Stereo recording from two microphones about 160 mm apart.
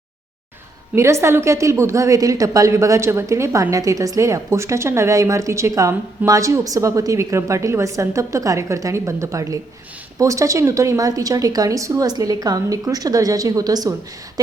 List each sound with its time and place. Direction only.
0.9 s a woman's voice: 20° right (ahead or behind)